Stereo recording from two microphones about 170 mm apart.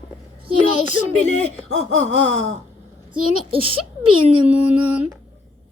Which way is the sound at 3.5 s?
30° right (ahead or behind).